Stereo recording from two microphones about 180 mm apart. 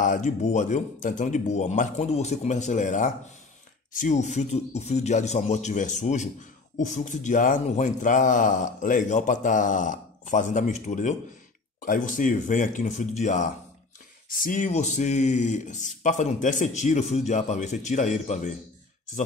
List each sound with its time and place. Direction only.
0.0 s a man's voice: 45° left (ahead or behind)